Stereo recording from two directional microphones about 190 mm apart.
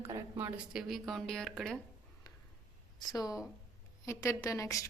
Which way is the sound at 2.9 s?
20° left (ahead or behind).